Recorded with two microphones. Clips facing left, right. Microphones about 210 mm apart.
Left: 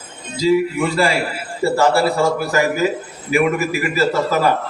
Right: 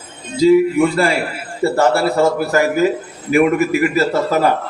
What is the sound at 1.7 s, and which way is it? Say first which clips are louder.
A man's voice: right 1 dB; 60° right (ahead or behind).